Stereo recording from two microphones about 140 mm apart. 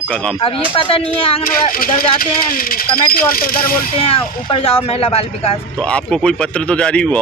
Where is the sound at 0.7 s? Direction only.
35° left (ahead or behind).